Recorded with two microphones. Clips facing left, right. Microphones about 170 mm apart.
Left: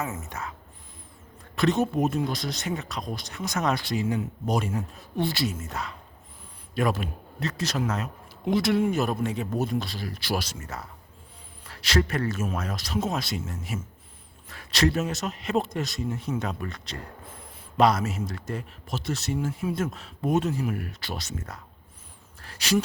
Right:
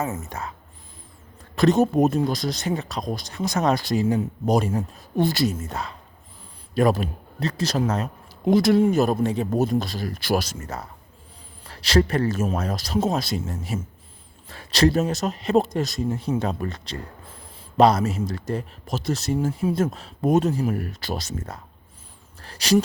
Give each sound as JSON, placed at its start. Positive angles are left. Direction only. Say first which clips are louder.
{"t": 0.0, "sound": "speech", "louder": "right 4 dB", "side_deg": -35}
{"t": 1.5, "sound": "speech", "louder": "right 6 dB", "side_deg": -40}
{"t": 22.4, "sound": "a sound", "louder": "right 5 dB", "side_deg": -35}